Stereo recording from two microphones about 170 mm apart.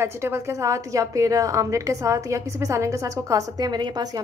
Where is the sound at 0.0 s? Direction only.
15° right (ahead or behind).